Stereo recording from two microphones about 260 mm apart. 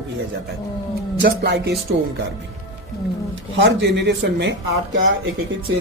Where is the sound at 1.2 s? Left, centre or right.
Right.